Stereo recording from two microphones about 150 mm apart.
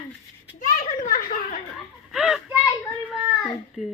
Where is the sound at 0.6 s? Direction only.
60° left (ahead or behind).